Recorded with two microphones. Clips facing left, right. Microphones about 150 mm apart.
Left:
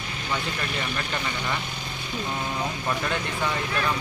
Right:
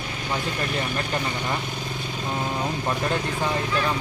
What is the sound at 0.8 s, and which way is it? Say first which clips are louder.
Speech: right 3 dB; 40° right (ahead or behind).